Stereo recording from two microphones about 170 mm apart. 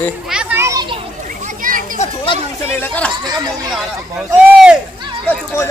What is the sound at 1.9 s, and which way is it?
Speech, 35° left (ahead or behind).